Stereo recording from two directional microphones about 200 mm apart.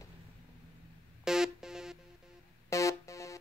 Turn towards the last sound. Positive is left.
turn(degrees=15)  # may be behind; listen again after turning